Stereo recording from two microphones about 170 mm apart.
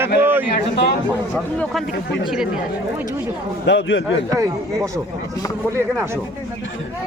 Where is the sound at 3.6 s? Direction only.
90° left.